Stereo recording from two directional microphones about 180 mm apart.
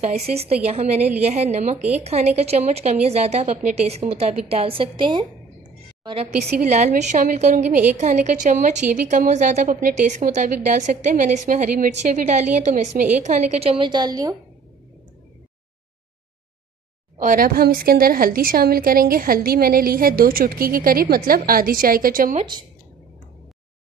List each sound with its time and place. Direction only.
0.0 s a woman's voice: 35° right (ahead or behind)
6.6 s a woman's voice: 45° right (ahead or behind); by 14.3 s 20° right (ahead or behind)
17.2 s a woman's voice: 50° right (ahead or behind)